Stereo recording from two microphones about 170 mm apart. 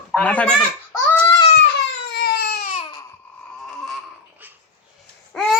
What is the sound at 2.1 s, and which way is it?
Baby cry, 70° left (ahead or behind).